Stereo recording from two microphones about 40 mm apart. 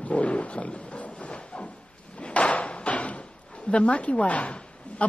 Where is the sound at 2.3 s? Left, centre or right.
Left.